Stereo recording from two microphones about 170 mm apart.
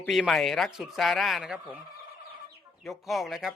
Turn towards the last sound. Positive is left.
turn(degrees=0)  # may be behind; listen again after turning